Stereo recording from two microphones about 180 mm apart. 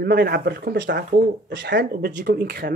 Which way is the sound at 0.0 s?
60° right (ahead or behind).